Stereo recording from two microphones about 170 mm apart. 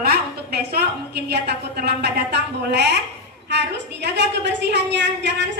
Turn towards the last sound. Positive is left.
turn(degrees=-90)